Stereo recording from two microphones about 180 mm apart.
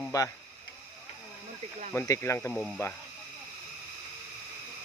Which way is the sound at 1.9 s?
15° left (ahead or behind).